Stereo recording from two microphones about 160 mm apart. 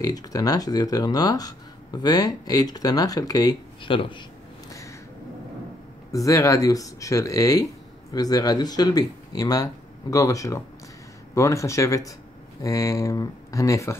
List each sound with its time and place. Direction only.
0.0 s speech: 25° left (ahead or behind)
4.6 s a sound: 20° left (ahead or behind)
6.1 s speech: 20° left (ahead or behind)